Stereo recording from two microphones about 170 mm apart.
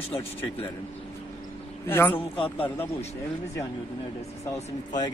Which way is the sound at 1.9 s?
10° left (ahead or behind).